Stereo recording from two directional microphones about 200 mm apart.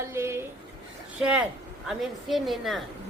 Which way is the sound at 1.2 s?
5° right (ahead or behind).